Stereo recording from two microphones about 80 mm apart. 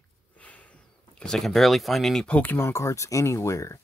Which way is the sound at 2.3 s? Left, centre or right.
Centre.